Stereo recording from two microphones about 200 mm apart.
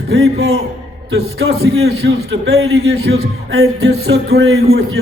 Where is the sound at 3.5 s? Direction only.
85° right.